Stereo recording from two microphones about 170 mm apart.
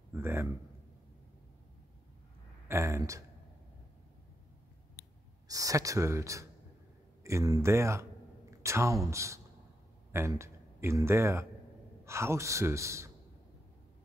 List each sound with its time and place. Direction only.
0.1 s a man's voice: 15° right (ahead or behind)
2.7 s a man's voice: 15° right (ahead or behind)
5.0 s a sound: 60° left (ahead or behind)
5.5 s a man's voice: 20° right (ahead or behind)